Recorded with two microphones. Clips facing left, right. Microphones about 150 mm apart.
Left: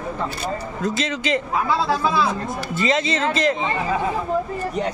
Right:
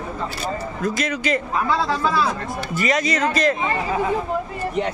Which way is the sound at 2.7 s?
25° left (ahead or behind).